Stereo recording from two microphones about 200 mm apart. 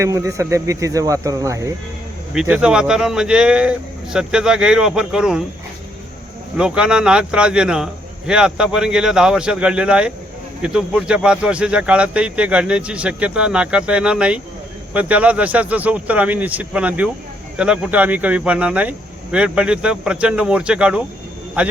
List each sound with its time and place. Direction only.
0.0 s speech: 15° right (ahead or behind)
2.3 s speech: 5° right (ahead or behind)
6.6 s speech: 5° right (ahead or behind)